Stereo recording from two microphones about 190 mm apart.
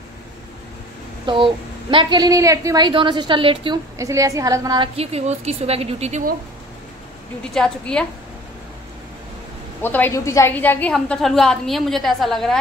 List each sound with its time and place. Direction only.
1.2 s a woman's voice: 25° right (ahead or behind)
4.9 s a woman's voice: 35° right (ahead or behind)
7.5 s a woman's voice: 5° left (ahead or behind)
9.8 s a woman's voice: 10° left (ahead or behind)